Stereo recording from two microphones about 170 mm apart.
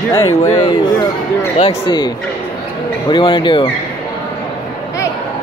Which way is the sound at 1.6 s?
35° left (ahead or behind).